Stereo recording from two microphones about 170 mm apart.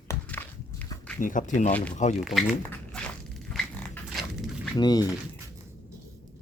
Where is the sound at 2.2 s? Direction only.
Centre (ahead or behind).